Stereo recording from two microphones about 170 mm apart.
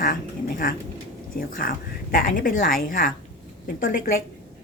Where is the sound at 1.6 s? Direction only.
55° left (ahead or behind).